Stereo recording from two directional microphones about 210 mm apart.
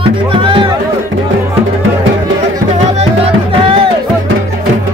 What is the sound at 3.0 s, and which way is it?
Music, 30° right (ahead or behind).